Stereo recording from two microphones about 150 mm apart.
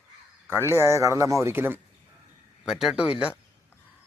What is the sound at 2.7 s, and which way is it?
Speech, 5° right (ahead or behind).